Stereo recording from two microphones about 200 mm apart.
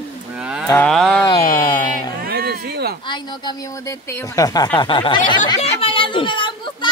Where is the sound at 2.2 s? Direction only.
50° right (ahead or behind).